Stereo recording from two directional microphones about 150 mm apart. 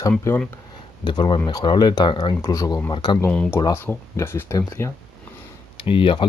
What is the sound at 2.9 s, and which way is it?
Speech, 30° left (ahead or behind).